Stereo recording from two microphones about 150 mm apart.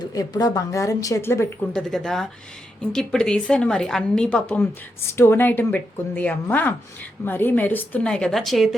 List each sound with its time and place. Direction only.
0.0 s a woman's voice: 25° left (ahead or behind)
1.7 s a woman's voice: 5° left (ahead or behind)